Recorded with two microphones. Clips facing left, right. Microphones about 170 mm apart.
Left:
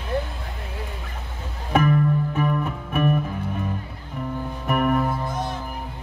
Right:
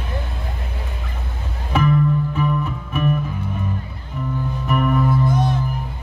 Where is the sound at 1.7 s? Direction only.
50° left (ahead or behind).